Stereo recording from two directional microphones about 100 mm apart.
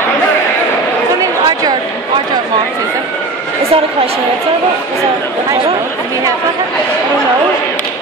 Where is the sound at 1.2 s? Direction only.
40° right (ahead or behind).